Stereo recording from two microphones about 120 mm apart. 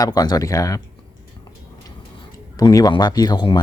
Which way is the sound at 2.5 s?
30° left (ahead or behind).